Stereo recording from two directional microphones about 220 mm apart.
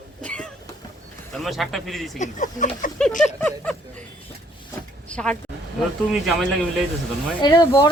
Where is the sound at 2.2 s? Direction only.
35° left (ahead or behind).